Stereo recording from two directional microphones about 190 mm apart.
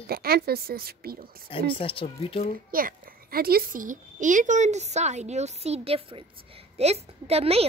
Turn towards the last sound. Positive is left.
turn(degrees=-30)  # may be behind; listen again after turning